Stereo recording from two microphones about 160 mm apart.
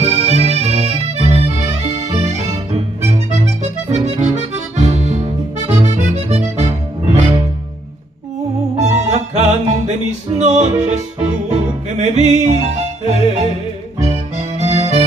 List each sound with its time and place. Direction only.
0.0 s accordion: 40° right (ahead or behind)
2.0 s music: 45° right (ahead or behind)
3.9 s accordion: 45° right (ahead or behind)
5.7 s music: 45° right (ahead or behind)
8.7 s music: 45° right (ahead or behind)